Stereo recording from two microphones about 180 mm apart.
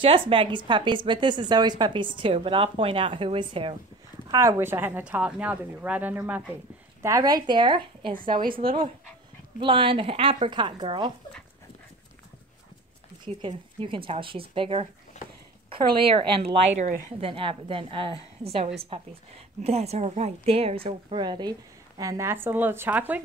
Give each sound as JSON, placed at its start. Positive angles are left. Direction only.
{"t": 0.0, "sound": "a woman's voice", "side_deg": -30}
{"t": 4.3, "sound": "speech", "side_deg": -15}
{"t": 7.0, "sound": "a woman's voice", "side_deg": -20}
{"t": 13.2, "sound": "a woman's voice", "side_deg": -30}
{"t": 15.2, "sound": "a sound", "side_deg": 40}
{"t": 15.7, "sound": "a woman's voice", "side_deg": -30}
{"t": 16.7, "sound": "speech", "side_deg": -45}
{"t": 17.3, "sound": "a woman's voice", "side_deg": -30}